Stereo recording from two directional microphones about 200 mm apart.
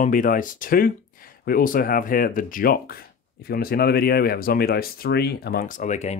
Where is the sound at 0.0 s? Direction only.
40° left (ahead or behind).